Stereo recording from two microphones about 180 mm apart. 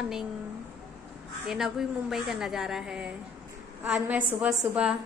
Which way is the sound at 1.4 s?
Centre (ahead or behind).